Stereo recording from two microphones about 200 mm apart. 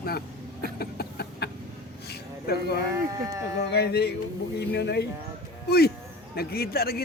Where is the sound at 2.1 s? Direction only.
55° left (ahead or behind).